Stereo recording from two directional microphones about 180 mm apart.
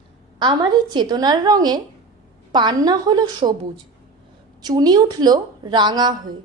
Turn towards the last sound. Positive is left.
turn(degrees=-25)  # may be behind; listen again after turning